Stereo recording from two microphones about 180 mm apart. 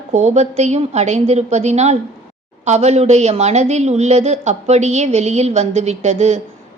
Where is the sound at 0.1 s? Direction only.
40° right (ahead or behind).